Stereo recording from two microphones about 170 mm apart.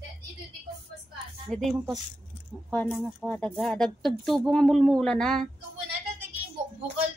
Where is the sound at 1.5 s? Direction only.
5° left (ahead or behind).